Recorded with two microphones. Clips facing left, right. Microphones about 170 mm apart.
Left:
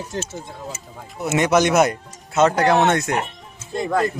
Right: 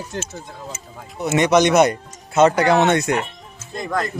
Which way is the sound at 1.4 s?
5° left (ahead or behind).